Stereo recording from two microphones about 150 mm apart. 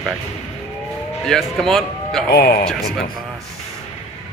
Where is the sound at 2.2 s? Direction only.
90° left.